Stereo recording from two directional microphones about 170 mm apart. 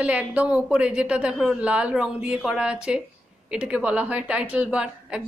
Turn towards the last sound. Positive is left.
turn(degrees=-5)  # may be behind; listen again after turning